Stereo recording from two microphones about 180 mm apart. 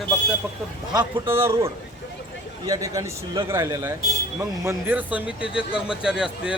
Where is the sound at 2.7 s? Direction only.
20° right (ahead or behind).